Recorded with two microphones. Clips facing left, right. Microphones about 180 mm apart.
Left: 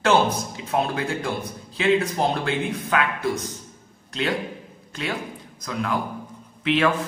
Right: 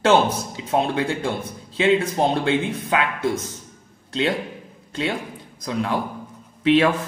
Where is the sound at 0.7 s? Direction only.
25° right (ahead or behind).